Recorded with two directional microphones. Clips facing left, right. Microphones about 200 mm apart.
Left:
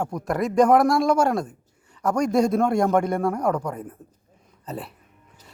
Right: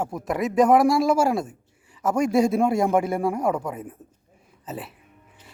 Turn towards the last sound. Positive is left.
turn(degrees=0)  # may be behind; listen again after turning